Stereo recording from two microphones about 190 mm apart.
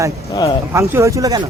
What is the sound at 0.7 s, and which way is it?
Speech, 15° right (ahead or behind).